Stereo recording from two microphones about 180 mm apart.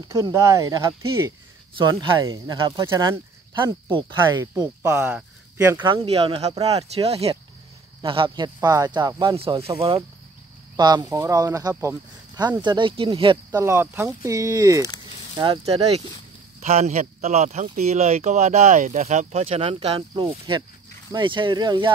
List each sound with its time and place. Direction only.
0.1 s speech: 15° right (ahead or behind)
4.8 s speech: 10° right (ahead or behind)
6.0 s speech: 30° right (ahead or behind)
8.5 s speech: 20° right (ahead or behind)
9.4 s speech: 30° right (ahead or behind)
13.6 s speech: 15° right (ahead or behind)